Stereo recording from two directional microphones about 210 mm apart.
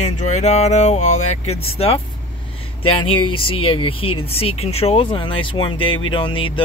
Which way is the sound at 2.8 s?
90° left.